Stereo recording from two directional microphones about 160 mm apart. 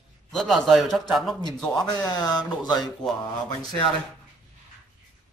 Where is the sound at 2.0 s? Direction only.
25° left (ahead or behind).